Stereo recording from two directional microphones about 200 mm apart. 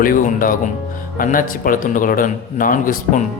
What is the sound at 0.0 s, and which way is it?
Speech, 45° left (ahead or behind).